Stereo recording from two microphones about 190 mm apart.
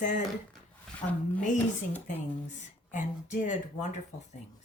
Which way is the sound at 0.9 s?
5° left (ahead or behind).